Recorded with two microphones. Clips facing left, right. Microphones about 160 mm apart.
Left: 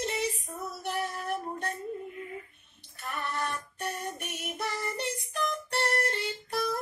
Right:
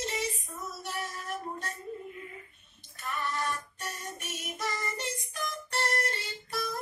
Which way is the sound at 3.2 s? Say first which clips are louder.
Even; 60° left (ahead or behind).